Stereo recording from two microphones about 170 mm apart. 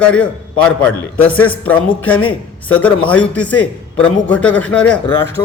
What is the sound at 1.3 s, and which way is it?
A man's voice, 10° left (ahead or behind).